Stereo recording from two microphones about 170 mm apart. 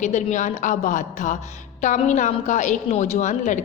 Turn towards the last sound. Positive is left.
turn(degrees=45)  # may be behind; listen again after turning